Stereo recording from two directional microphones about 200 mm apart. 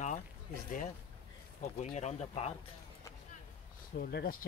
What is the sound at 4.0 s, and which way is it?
Speech, 50° left (ahead or behind).